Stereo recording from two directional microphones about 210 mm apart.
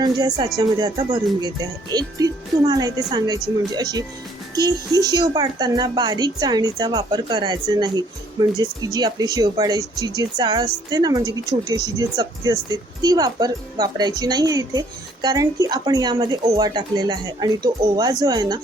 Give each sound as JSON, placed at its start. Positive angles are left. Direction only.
{"t": 0.0, "sound": "speech", "side_deg": -20}